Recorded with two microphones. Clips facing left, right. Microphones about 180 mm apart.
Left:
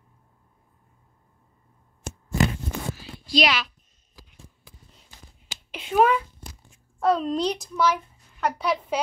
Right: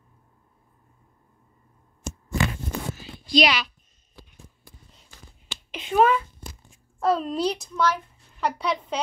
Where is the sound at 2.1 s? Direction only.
60° left (ahead or behind).